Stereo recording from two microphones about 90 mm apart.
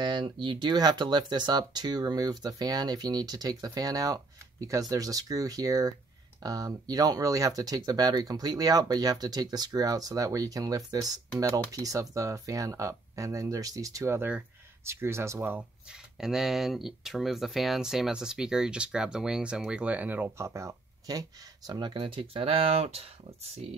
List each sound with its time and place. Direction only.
0.0 s speech: 55° right (ahead or behind); by 15.6 s 20° right (ahead or behind)
15.9 s speech: 5° right (ahead or behind); by 20.4 s 20° right (ahead or behind)
20.4 s speech: 35° right (ahead or behind); by 23.0 s 90° right